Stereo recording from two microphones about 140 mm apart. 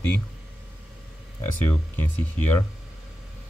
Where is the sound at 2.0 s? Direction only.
15° left (ahead or behind).